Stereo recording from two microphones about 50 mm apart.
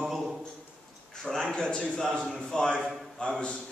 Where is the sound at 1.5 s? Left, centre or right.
Centre.